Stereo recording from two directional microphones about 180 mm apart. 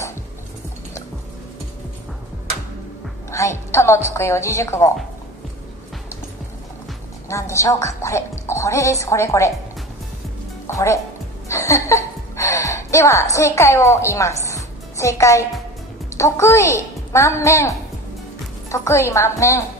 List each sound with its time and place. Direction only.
3.3 s a woman's voice: 15° left (ahead or behind)
7.2 s a woman's voice: 15° left (ahead or behind)
10.7 s speech: 15° left (ahead or behind)
11.4 s a sound: 15° left (ahead or behind)
16.2 s a child's voice: 15° left (ahead or behind)